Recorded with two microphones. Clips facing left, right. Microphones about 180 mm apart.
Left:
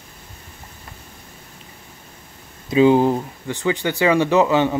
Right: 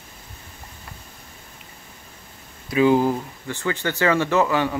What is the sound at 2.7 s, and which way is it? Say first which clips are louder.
Speech: left 3 dB; 25° left (ahead or behind).